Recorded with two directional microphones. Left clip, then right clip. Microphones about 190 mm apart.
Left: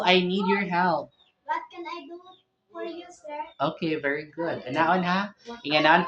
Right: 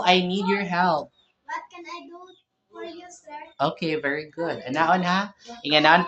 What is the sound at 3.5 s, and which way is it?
Speech, 25° right (ahead or behind).